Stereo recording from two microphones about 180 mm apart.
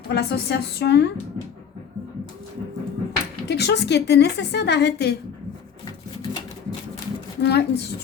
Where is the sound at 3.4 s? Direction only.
65° left (ahead or behind).